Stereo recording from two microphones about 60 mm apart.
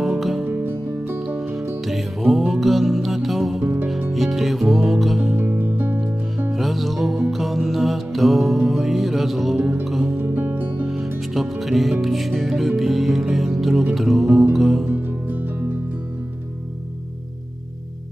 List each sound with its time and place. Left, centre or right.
0.0 s music: centre
0.7 s music: right
1.9 s music: centre
3.6 s music: right
4.1 s music: centre
5.4 s music: right
6.5 s music: centre
9.6 s music: right
9.8 s music: centre
10.1 s music: right
10.9 s music: centre
14.9 s music: right